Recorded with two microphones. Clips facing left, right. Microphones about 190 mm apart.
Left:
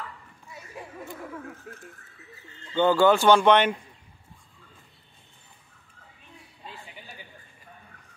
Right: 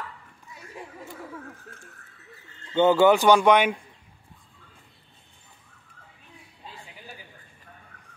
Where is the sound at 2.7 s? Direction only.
20° right (ahead or behind).